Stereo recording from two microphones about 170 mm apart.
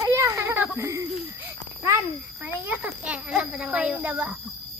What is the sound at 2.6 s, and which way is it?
A child's voice, 5° right (ahead or behind).